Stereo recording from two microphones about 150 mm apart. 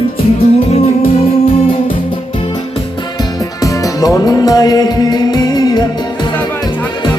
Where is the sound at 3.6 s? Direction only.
20° left (ahead or behind).